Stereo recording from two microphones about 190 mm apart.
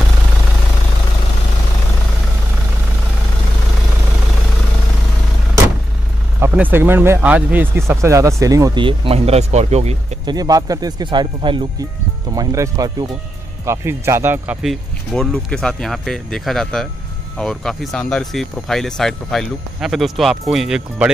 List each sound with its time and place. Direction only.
6.4 s speech: 10° right (ahead or behind); by 9.9 s 35° right (ahead or behind)
10.2 s speech: 20° right (ahead or behind); by 21.1 s 5° right (ahead or behind)